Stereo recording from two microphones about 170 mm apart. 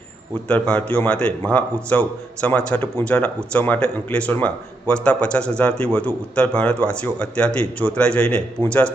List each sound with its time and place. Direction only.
0.4 s a man's voice: 5° left (ahead or behind)